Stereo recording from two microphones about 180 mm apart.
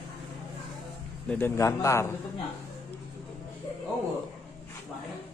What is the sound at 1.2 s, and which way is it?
Speech, 10° left (ahead or behind).